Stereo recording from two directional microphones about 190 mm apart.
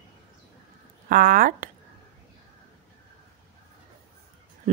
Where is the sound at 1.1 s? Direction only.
45° right (ahead or behind).